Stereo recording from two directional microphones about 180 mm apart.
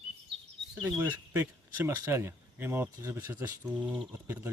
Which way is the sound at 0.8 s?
10° right (ahead or behind).